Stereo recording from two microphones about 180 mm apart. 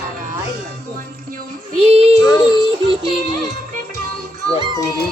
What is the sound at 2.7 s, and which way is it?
Music, 30° right (ahead or behind).